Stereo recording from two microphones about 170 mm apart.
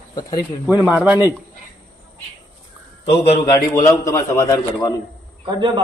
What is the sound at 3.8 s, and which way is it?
A man's voice, 15° left (ahead or behind).